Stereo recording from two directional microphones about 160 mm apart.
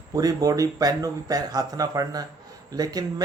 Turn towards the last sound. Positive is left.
turn(degrees=-25)  # may be behind; listen again after turning